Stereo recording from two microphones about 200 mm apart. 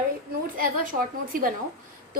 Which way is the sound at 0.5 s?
45° right (ahead or behind).